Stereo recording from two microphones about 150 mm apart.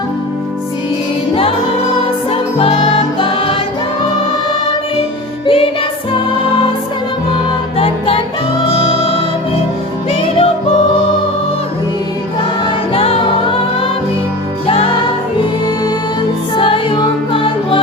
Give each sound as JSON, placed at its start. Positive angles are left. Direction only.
{"t": 2.3, "sound": "music", "side_deg": 40}
{"t": 5.5, "sound": "music", "side_deg": 40}
{"t": 7.8, "sound": "music", "side_deg": 40}
{"t": 10.1, "sound": "music", "side_deg": 40}
{"t": 12.9, "sound": "music", "side_deg": 40}
{"t": 16.6, "sound": "music", "side_deg": 35}